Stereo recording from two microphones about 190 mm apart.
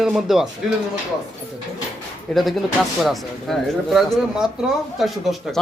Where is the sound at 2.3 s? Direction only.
Centre (ahead or behind).